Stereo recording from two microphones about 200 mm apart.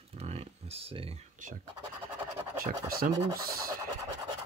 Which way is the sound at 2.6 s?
50° right (ahead or behind).